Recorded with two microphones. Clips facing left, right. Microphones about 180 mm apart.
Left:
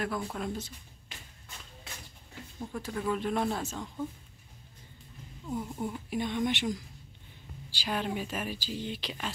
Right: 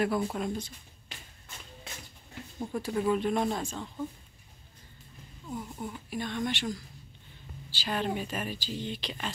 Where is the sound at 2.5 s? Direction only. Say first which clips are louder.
Right 5 dB; 15° right (ahead or behind).